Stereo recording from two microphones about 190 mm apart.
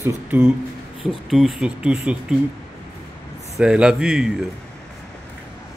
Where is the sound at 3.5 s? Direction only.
5° right (ahead or behind).